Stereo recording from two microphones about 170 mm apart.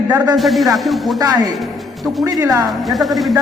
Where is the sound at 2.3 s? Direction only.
20° right (ahead or behind).